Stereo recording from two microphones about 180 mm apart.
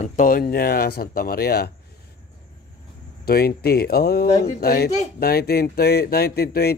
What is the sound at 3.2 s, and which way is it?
A man's voice, 60° left (ahead or behind).